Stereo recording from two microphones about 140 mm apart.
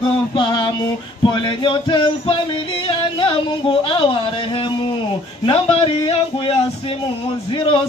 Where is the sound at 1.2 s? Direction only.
35° left (ahead or behind).